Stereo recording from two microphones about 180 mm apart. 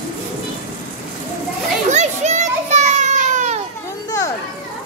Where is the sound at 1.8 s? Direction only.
40° right (ahead or behind).